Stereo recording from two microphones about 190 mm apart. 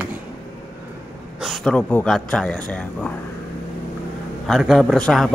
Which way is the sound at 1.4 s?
Centre (ahead or behind).